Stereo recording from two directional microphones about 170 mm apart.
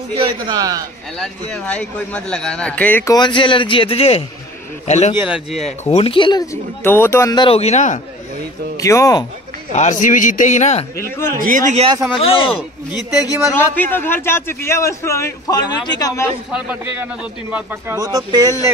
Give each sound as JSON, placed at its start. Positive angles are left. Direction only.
{"t": 0.1, "sound": "a man's voice", "side_deg": -30}
{"t": 0.6, "sound": "speech", "side_deg": -20}
{"t": 1.1, "sound": "a man's voice", "side_deg": 5}
{"t": 3.2, "sound": "a man's voice", "side_deg": 30}
{"t": 5.3, "sound": "speech", "side_deg": 0}
{"t": 5.9, "sound": "speech", "side_deg": 35}
{"t": 7.4, "sound": "a man's voice", "side_deg": 40}
{"t": 8.7, "sound": "speech", "side_deg": 20}
{"t": 9.7, "sound": "a man's voice", "side_deg": 45}
{"t": 11.3, "sound": "a man's voice", "side_deg": -50}
{"t": 12.2, "sound": "a man's voice", "side_deg": 35}
{"t": 13.7, "sound": "a man's voice", "side_deg": 10}
{"t": 16.5, "sound": "a man's voice", "side_deg": -10}